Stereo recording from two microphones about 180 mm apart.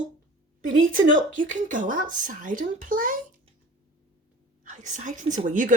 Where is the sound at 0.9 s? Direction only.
45° right (ahead or behind).